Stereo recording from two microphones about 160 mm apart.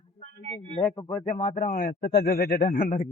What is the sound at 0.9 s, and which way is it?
Speech, 25° left (ahead or behind).